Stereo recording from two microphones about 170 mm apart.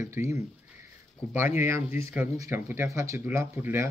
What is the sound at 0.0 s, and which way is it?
Speech, 15° right (ahead or behind).